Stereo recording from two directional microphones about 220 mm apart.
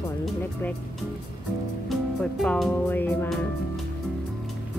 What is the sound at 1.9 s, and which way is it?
Music, centre (ahead or behind).